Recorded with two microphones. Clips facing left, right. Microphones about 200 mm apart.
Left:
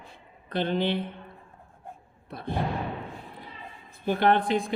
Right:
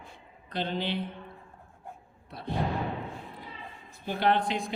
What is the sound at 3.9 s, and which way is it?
Speech, 55° left (ahead or behind).